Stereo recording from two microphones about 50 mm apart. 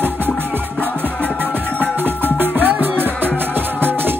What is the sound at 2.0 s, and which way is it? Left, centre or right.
Music, right.